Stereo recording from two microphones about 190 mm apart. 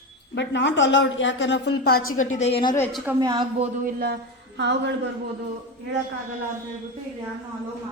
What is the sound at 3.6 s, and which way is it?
Speech, 50° right (ahead or behind).